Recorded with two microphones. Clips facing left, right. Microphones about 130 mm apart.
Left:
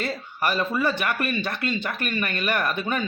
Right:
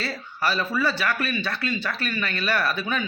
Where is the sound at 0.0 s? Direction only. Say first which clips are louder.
Left 1 dB; 15° left (ahead or behind).